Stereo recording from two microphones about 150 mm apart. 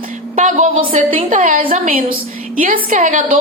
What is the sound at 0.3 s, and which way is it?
A woman's voice, 55° right (ahead or behind).